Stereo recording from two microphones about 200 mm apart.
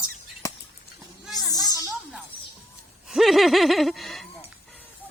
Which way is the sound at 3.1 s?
Centre (ahead or behind).